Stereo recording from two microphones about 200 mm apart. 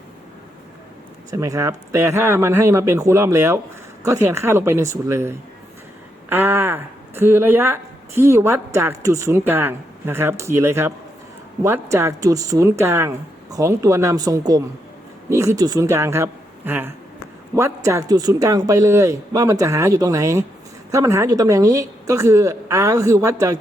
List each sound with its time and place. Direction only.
1.3 s speech: 15° right (ahead or behind)